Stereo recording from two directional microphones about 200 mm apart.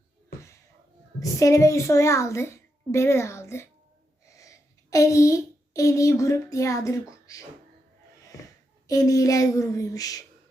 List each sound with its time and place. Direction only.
1.2 s a child's voice: 15° left (ahead or behind)
8.9 s a child's voice: 15° left (ahead or behind)